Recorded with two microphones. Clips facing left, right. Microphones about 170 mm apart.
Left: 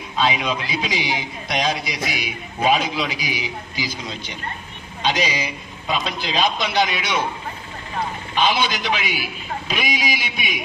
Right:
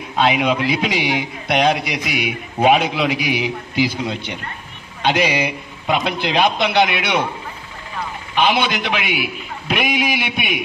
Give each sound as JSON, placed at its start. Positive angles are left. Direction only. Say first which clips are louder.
{"t": 0.1, "sound": "a man's voice", "louder": "right 5 dB", "side_deg": -60}
{"t": 8.4, "sound": "a man's voice", "louder": "right 3 dB", "side_deg": -60}